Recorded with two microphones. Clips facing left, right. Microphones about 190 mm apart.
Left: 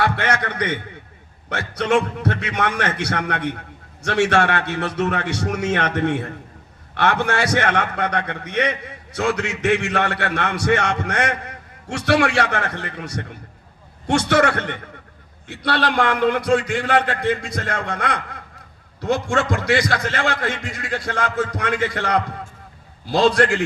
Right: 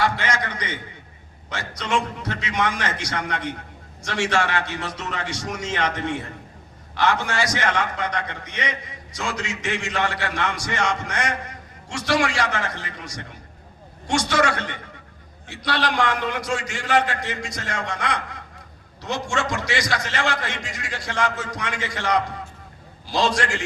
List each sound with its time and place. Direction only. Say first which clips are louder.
0.0 s a man's voice: left 3 dB; 60° left (ahead or behind)